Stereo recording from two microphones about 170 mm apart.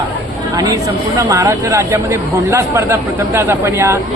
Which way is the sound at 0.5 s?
20° right (ahead or behind).